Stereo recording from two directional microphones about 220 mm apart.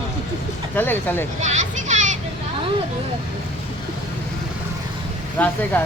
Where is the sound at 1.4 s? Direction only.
30° right (ahead or behind).